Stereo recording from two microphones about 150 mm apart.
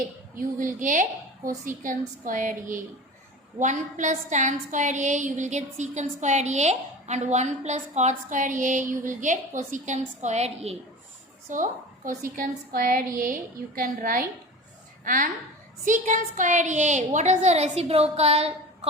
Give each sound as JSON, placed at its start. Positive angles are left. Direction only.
{"t": 0.3, "sound": "a woman's voice", "side_deg": -60}
{"t": 11.4, "sound": "a woman's voice", "side_deg": -60}